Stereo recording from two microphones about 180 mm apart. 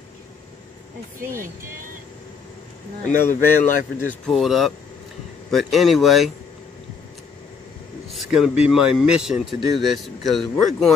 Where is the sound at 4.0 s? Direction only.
5° left (ahead or behind).